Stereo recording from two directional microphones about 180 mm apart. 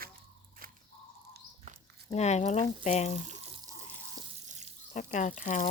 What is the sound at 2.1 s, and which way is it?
Speech, 40° left (ahead or behind).